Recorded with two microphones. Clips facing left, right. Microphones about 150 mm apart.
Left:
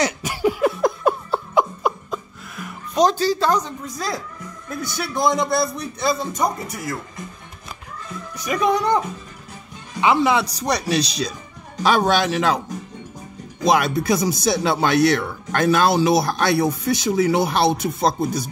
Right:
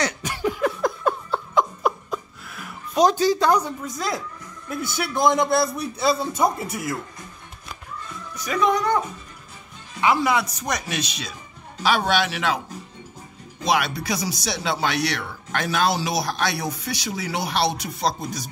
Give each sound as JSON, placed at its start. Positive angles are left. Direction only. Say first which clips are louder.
{"t": 0.0, "sound": "laughter", "louder": "left 4 dB", "side_deg": 10}
{"t": 3.9, "sound": "a man's voice", "louder": "left 3 dB", "side_deg": 0}
{"t": 8.5, "sound": "speech", "louder": "left 2 dB", "side_deg": 15}
{"t": 13.7, "sound": "speech", "louder": "left 5 dB", "side_deg": 45}